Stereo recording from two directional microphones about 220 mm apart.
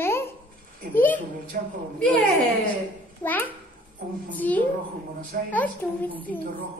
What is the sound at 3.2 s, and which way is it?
A child's voice, 10° left (ahead or behind).